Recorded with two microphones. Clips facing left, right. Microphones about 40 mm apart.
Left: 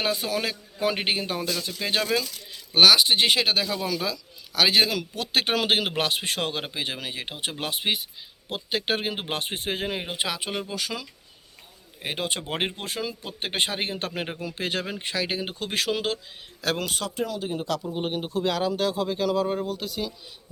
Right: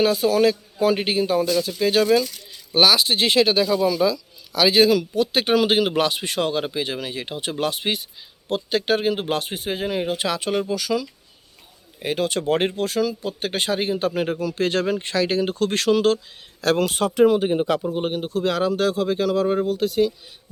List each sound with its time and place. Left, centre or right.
0.0 s speech: left
4.5 s speech: left; by 8.8 s centre
8.9 s speech: left
10.0 s speech: centre
10.8 s speech: left
11.9 s speech: centre
14.7 s speech: centre
17.2 s speech: right
17.9 s speech: centre